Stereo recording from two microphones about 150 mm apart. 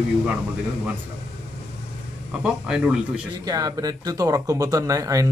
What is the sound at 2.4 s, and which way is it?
Speech, 5° right (ahead or behind).